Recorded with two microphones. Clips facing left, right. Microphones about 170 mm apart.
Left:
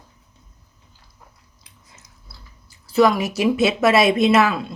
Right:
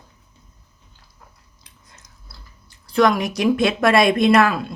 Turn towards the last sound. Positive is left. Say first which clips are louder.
# right 1 dB
turn(degrees=0)  # may be behind; listen again after turning